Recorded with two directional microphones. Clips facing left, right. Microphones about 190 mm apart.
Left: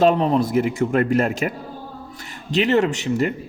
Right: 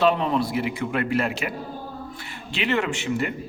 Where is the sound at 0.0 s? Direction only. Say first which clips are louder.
Left 4 dB; 40° left (ahead or behind).